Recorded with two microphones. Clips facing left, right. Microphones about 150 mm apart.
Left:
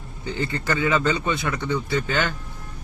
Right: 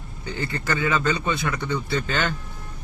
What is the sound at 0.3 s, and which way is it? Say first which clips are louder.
Speech: left 2 dB; 20° left (ahead or behind).